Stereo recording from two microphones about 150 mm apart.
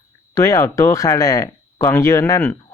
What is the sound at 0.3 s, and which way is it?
Speech, 20° left (ahead or behind).